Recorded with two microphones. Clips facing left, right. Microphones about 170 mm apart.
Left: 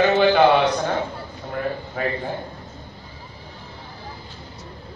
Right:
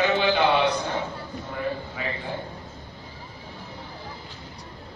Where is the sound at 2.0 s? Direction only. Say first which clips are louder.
Left 7 dB; 45° left (ahead or behind).